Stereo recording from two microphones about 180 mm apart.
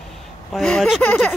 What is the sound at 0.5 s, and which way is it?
Speech, 5° left (ahead or behind).